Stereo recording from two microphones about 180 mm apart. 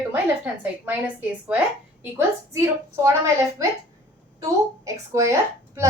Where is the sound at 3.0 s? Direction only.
15° right (ahead or behind).